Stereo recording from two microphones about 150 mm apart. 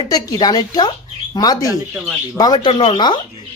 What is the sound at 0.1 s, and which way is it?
A woman's voice, 25° left (ahead or behind).